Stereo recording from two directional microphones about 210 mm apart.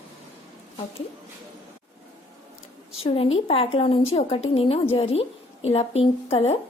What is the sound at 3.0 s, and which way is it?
Speech, 25° left (ahead or behind).